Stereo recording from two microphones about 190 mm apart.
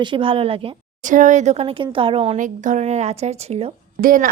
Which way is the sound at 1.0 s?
40° right (ahead or behind).